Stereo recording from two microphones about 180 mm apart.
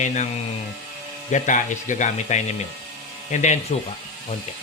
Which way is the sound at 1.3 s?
45° left (ahead or behind).